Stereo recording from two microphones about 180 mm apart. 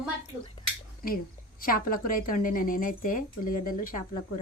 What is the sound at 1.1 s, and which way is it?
A woman's voice, 55° left (ahead or behind).